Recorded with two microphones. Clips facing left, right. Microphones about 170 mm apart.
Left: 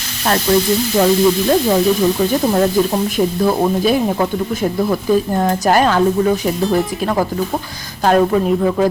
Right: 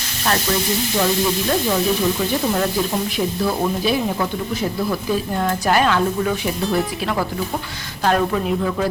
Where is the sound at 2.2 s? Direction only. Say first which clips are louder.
Left 6 dB; 35° left (ahead or behind).